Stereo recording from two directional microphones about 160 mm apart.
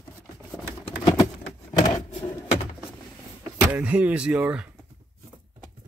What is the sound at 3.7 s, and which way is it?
Speech, 10° right (ahead or behind).